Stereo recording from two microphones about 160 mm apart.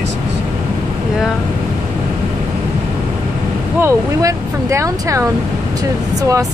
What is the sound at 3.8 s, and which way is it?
Speech, 20° right (ahead or behind).